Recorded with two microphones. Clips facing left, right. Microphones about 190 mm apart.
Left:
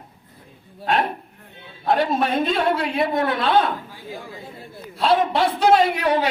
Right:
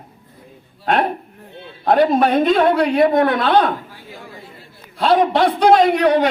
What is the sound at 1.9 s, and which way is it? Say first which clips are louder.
Speech: right 6 dB; 45° right (ahead or behind).